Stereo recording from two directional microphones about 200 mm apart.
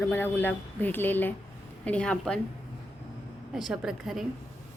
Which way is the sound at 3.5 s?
Centre (ahead or behind).